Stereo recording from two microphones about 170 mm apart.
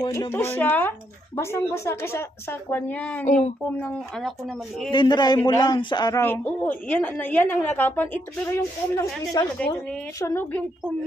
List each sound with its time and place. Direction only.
0.0 s a woman's voice: 15° left (ahead or behind)
4.9 s a man's voice: 25° left (ahead or behind)
6.2 s a woman's voice: 10° left (ahead or behind)